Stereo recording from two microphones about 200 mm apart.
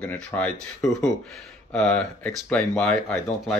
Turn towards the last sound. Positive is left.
turn(degrees=0)  # may be behind; listen again after turning